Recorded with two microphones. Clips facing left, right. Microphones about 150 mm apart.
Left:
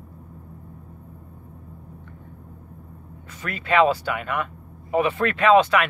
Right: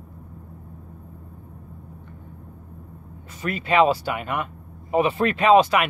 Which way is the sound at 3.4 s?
30° right (ahead or behind).